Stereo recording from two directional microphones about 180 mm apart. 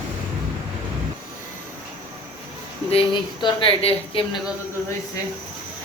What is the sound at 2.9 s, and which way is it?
Speech, 30° left (ahead or behind).